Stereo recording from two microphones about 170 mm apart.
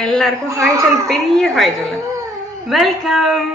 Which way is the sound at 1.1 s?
Centre (ahead or behind).